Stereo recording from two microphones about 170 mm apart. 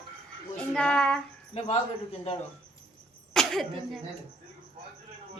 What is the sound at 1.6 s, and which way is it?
Speech, 35° left (ahead or behind).